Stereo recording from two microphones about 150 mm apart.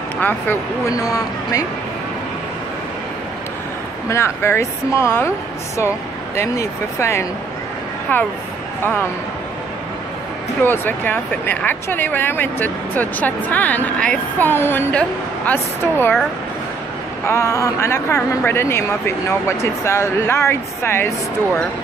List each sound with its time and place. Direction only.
0.2 s speech: 15° left (ahead or behind)
4.1 s speech: 15° left (ahead or behind)
6.3 s speech: 20° left (ahead or behind)
10.6 s speech: 15° left (ahead or behind)
17.3 s speech: 20° left (ahead or behind)